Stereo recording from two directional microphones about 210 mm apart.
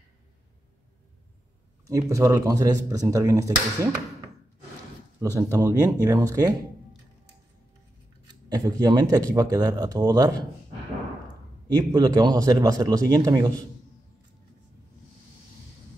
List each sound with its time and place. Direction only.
1.9 s speech: 15° right (ahead or behind)
5.2 s speech: 15° right (ahead or behind)
8.3 s speech: 20° right (ahead or behind)
11.6 s speech: 20° right (ahead or behind)